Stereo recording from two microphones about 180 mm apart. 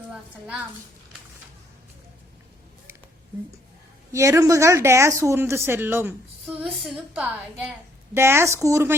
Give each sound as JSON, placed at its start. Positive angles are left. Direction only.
{"t": 0.1, "sound": "a woman's voice", "side_deg": -5}
{"t": 4.1, "sound": "a woman's voice", "side_deg": -15}